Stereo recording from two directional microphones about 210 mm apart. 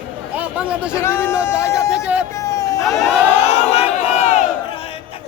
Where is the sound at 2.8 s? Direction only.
Centre (ahead or behind).